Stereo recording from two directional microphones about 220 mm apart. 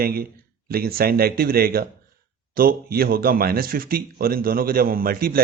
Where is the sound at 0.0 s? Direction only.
45° right (ahead or behind).